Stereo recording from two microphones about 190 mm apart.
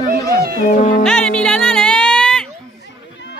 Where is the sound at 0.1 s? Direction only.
50° right (ahead or behind).